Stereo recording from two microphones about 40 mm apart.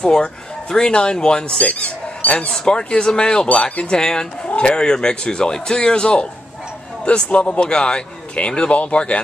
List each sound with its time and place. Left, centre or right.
0.0 s speech: centre
1.6 s speech: left
2.5 s speech: left
3.4 s speech: left
7.2 s speech: left